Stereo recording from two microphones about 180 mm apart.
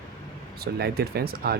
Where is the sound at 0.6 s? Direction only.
60° right (ahead or behind).